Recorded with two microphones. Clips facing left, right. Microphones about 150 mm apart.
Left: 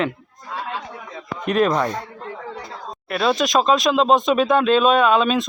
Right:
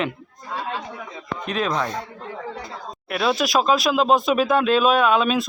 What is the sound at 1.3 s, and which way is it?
Speech, 5° left (ahead or behind).